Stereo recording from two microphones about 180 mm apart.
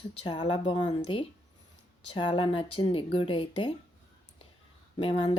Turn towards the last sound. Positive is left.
turn(degrees=30)  # may be behind; listen again after turning